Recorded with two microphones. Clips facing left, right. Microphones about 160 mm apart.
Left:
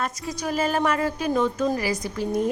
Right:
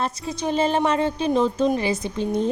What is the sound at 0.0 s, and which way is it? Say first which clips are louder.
A woman's voice: right 3 dB; 30° right (ahead or behind).